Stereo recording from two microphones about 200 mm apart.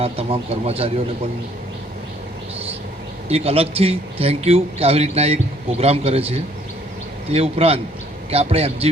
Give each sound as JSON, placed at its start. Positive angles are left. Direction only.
{"t": 0.0, "sound": "speech", "side_deg": -30}
{"t": 3.2, "sound": "speech", "side_deg": -30}